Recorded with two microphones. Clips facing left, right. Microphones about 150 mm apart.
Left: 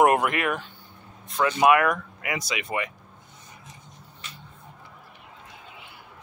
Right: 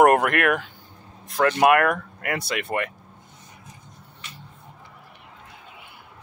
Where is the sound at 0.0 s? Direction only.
55° right (ahead or behind).